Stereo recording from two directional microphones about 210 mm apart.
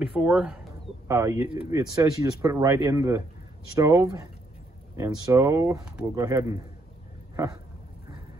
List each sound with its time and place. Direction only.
0.0 s speech: 5° right (ahead or behind)